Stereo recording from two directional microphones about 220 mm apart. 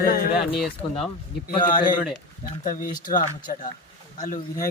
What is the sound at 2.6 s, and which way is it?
A man's voice, 35° left (ahead or behind).